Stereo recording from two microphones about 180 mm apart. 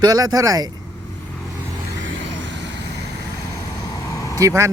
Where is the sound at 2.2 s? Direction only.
85° right.